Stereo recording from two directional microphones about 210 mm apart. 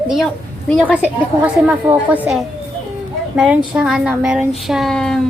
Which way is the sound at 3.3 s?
5° right (ahead or behind).